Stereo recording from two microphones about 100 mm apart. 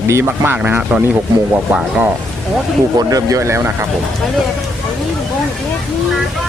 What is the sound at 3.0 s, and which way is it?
Speech, 35° right (ahead or behind).